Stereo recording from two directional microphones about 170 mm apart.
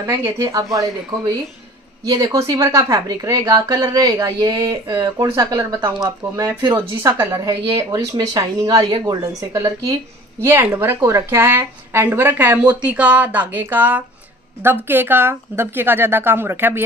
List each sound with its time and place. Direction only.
0.0 s a woman's voice: 15° right (ahead or behind)